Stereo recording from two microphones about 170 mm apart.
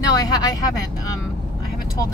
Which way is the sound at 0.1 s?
20° left (ahead or behind).